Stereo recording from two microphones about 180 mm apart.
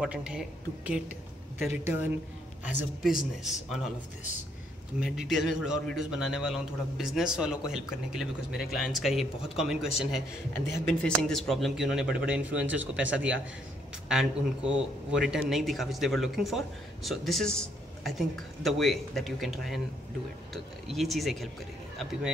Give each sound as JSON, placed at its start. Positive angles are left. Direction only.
{"t": 0.0, "sound": "a man's voice", "side_deg": -5}
{"t": 2.6, "sound": "a man's voice", "side_deg": -5}
{"t": 5.0, "sound": "a man's voice", "side_deg": 0}
{"t": 10.5, "sound": "a man's voice", "side_deg": 15}